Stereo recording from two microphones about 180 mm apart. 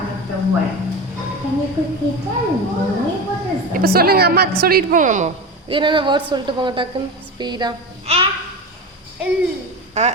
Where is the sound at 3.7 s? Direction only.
55° right (ahead or behind).